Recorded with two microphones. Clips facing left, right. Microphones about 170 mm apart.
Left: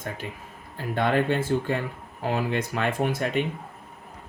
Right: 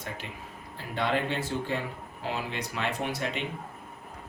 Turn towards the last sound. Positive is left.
turn(degrees=50)  # may be behind; listen again after turning